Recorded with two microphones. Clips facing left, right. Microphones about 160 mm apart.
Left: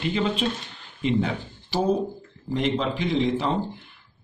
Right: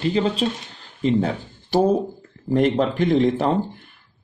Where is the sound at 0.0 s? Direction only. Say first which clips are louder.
Right 4 dB; 35° right (ahead or behind).